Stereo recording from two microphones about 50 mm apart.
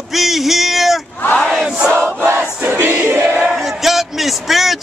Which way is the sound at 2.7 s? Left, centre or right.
Right.